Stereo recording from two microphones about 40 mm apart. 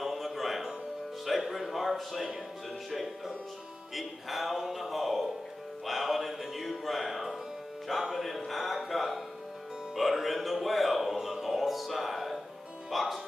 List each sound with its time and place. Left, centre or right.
0.0 s music: centre
1.2 s speech: centre
11.5 s music: centre
12.9 s speech: centre